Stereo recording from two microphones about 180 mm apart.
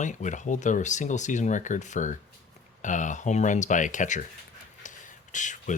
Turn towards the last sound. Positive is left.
turn(degrees=45)  # may be behind; listen again after turning